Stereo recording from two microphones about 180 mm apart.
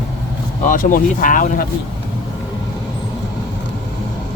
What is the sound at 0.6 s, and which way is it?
Speech, 50° left (ahead or behind).